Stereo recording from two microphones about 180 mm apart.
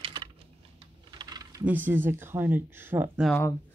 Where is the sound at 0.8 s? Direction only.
25° right (ahead or behind).